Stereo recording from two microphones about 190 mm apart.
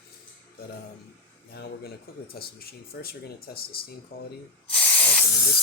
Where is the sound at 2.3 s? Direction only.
55° left (ahead or behind).